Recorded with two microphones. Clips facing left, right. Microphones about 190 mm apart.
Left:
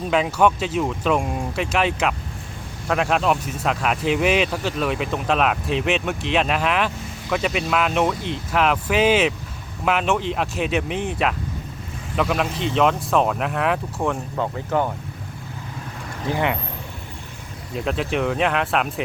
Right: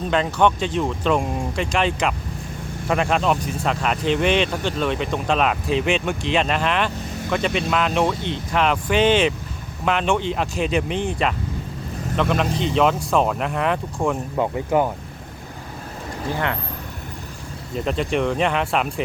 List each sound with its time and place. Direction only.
0.1 s speech: 5° left (ahead or behind)
14.3 s speech: 15° right (ahead or behind)
16.3 s speech: 15° left (ahead or behind)
17.7 s speech: centre (ahead or behind)